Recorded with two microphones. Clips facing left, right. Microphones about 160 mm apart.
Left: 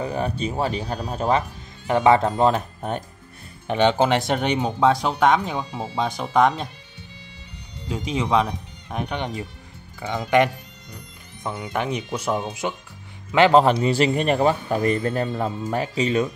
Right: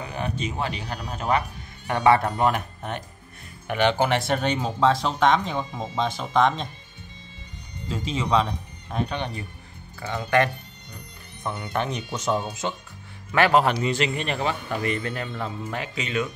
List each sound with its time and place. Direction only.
0.0 s speech: 35° left (ahead or behind)
1.9 s speech: 20° left (ahead or behind)
3.6 s speech: 20° left (ahead or behind)
7.9 s speech: 10° left (ahead or behind)
13.3 s speech: 25° left (ahead or behind)